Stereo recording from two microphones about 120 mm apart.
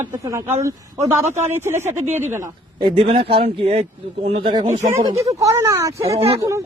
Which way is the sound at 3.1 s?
45° right (ahead or behind).